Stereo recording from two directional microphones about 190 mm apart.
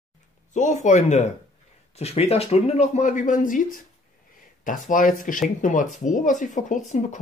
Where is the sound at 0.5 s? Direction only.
40° left (ahead or behind).